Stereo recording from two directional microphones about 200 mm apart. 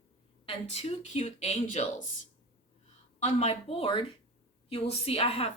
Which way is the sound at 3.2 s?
30° left (ahead or behind).